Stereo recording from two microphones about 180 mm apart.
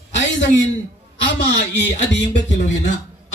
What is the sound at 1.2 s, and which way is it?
Speech, 75° left (ahead or behind).